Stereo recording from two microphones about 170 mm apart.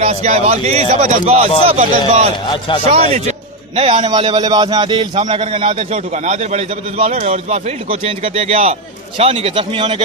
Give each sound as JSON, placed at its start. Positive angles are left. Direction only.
{"t": 0.0, "sound": "a man's voice", "side_deg": -40}